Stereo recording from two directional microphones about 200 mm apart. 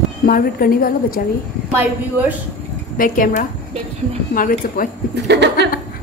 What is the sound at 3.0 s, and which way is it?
A woman's voice, 45° left (ahead or behind).